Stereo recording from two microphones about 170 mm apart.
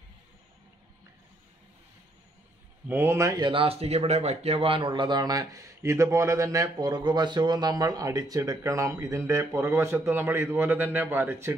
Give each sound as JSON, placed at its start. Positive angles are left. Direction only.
{"t": 2.9, "sound": "speech", "side_deg": -15}